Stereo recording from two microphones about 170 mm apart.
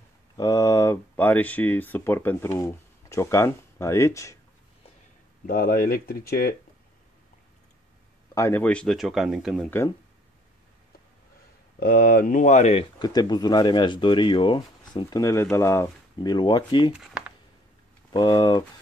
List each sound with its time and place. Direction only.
0.4 s speech: 20° left (ahead or behind)
5.5 s speech: 60° left (ahead or behind)
8.4 s speech: 15° left (ahead or behind); by 9.7 s centre (ahead or behind)
11.8 s speech: 55° left (ahead or behind)
13.0 s speech: 25° left (ahead or behind)
16.9 s a sound: 5° right (ahead or behind)
18.1 s speech: 25° left (ahead or behind)